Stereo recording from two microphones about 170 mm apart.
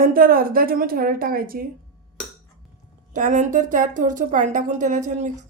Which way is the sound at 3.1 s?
50° right (ahead or behind).